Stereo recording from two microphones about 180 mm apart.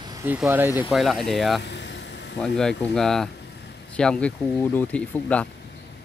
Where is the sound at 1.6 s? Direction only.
75° left (ahead or behind).